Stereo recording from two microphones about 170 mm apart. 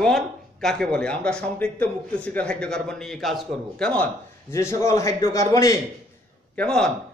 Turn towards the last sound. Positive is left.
turn(degrees=5)  # may be behind; listen again after turning